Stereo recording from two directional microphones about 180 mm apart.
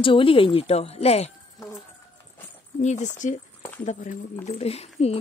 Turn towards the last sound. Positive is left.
turn(degrees=35)  # may be behind; listen again after turning